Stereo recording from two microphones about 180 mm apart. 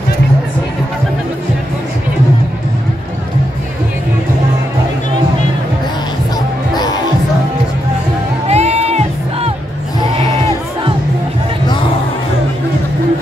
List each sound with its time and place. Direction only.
6.7 s music: 20° left (ahead or behind)
8.5 s music: 35° right (ahead or behind)